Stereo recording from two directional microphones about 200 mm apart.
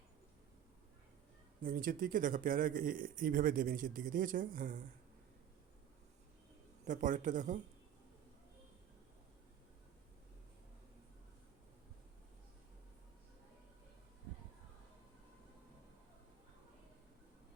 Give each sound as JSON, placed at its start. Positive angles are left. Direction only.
{"t": 1.6, "sound": "speech", "side_deg": -45}
{"t": 6.8, "sound": "speech", "side_deg": -40}